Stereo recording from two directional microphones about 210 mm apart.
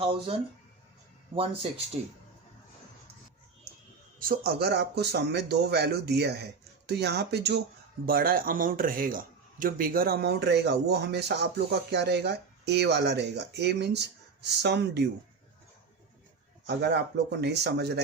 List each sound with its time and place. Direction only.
0.0 s speech: 25° right (ahead or behind)
4.2 s a man's voice: 45° right (ahead or behind)
16.6 s a man's voice: 50° right (ahead or behind)